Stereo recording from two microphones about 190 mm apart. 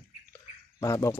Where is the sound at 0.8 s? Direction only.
15° left (ahead or behind).